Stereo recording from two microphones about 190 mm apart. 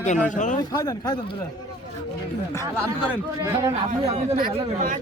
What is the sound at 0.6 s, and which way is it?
Speech, 20° left (ahead or behind).